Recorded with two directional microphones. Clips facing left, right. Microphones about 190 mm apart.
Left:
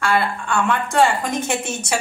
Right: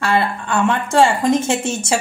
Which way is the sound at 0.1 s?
25° right (ahead or behind).